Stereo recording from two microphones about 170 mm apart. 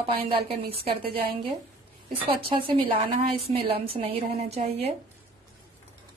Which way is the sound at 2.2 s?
30° right (ahead or behind).